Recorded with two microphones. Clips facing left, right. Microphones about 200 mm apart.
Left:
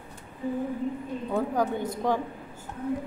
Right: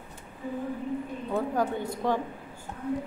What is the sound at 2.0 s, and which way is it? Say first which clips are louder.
Speech: left 1 dB; 15° left (ahead or behind).